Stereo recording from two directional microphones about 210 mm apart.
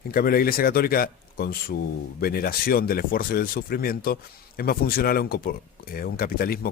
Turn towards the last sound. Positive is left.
turn(degrees=45)  # may be behind; listen again after turning